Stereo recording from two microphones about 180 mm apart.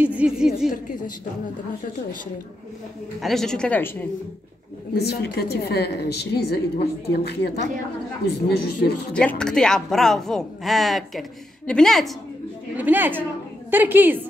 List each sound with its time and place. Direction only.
0.0 s a woman's voice: 5° right (ahead or behind)
3.2 s a woman's voice: centre (ahead or behind)
4.9 s a woman's voice: 65° left (ahead or behind)
9.4 s a woman's voice: 5° left (ahead or behind)
12.7 s a woman's voice: 10° right (ahead or behind)